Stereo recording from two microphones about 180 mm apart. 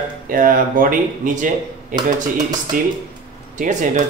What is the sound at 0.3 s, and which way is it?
A man's voice, 50° right (ahead or behind).